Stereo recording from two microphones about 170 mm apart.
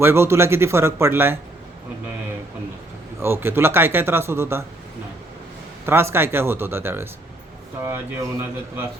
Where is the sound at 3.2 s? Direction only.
15° right (ahead or behind).